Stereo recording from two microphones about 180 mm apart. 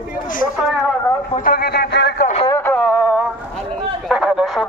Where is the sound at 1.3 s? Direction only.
55° left (ahead or behind).